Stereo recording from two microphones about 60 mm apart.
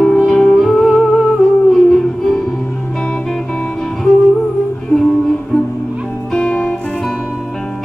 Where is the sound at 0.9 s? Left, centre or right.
Centre.